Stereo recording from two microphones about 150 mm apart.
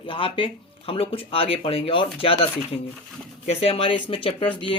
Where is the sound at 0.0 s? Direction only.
35° left (ahead or behind).